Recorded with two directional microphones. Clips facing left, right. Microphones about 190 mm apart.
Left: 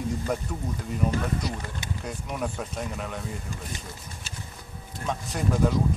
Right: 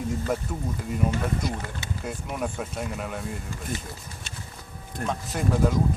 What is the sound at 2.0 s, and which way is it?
Speech, 5° right (ahead or behind).